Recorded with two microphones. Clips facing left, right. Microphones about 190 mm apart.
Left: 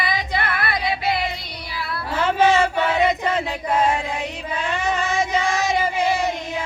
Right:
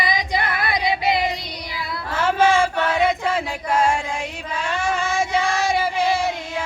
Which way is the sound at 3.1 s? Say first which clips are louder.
Even; 5° right (ahead or behind).